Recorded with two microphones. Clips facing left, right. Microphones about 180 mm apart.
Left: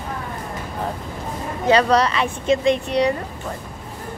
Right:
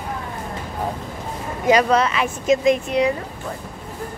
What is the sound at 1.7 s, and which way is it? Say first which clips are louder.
Speech: even; 10° right (ahead or behind).